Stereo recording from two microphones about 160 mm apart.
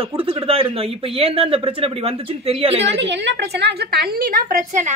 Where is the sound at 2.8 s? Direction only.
90° right; by 4.9 s 50° right (ahead or behind).